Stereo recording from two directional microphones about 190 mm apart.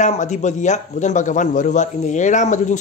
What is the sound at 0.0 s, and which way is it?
A man's voice, 40° left (ahead or behind).